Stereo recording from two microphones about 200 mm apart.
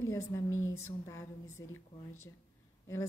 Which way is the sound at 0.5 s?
80° left.